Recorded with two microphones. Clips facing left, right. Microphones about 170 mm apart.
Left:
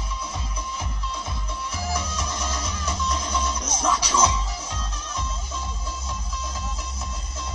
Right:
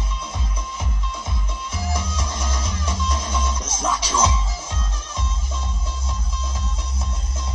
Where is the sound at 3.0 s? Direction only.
25° right (ahead or behind).